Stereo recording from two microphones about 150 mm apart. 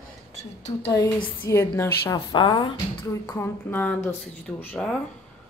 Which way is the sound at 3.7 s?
10° left (ahead or behind).